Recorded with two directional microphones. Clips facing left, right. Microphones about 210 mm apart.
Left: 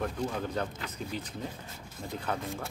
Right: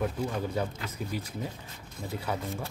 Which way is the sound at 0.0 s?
5° right (ahead or behind).